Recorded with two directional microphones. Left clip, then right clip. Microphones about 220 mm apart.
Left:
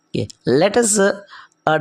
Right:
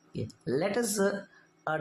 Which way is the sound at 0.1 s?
35° left (ahead or behind).